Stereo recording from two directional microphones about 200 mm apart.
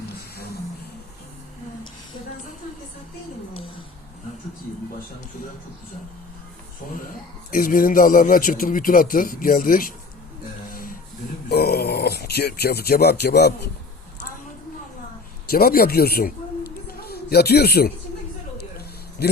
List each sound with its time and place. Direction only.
7.5 s a man's voice: 45° left (ahead or behind)
10.7 s a sound: 45° left (ahead or behind)
11.4 s speech: 50° left (ahead or behind)
15.4 s a woman's voice: 50° left (ahead or behind)
19.2 s a man's voice: 55° left (ahead or behind)